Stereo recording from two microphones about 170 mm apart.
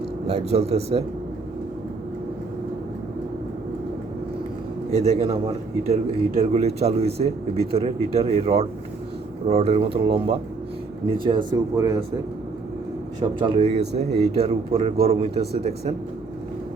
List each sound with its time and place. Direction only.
0.3 s speech: 40° right (ahead or behind)
4.9 s speech: 35° right (ahead or behind); by 12.0 s 20° right (ahead or behind)
13.1 s speech: 30° right (ahead or behind)